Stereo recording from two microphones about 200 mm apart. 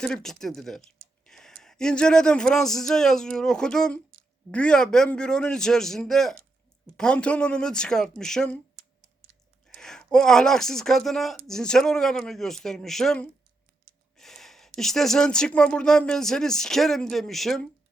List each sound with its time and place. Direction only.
0.0 s speech: 5° left (ahead or behind)
9.6 s speech: 5° left (ahead or behind)